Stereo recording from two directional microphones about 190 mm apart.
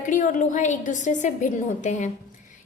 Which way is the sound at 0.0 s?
40° left (ahead or behind).